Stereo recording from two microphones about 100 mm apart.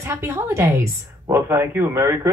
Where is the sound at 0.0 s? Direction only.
30° right (ahead or behind).